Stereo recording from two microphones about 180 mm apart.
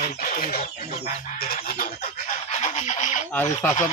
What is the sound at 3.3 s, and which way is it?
Speech, 15° left (ahead or behind).